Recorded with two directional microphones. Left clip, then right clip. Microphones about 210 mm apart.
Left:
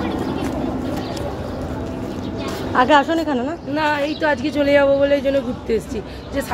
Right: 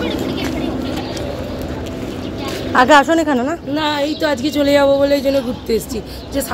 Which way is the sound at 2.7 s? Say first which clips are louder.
Right 4 dB; 20° right (ahead or behind).